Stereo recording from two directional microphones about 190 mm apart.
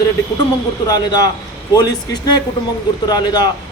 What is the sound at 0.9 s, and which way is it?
A man's voice, 20° left (ahead or behind).